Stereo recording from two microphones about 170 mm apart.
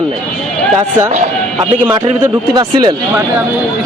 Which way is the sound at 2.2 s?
25° right (ahead or behind).